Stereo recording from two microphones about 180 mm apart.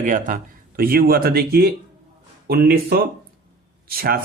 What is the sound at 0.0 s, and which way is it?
A man's voice, 45° right (ahead or behind).